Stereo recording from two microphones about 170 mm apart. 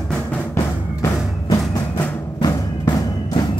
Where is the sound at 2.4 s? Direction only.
25° left (ahead or behind).